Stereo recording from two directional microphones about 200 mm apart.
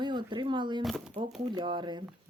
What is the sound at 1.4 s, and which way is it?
Speech, 25° right (ahead or behind).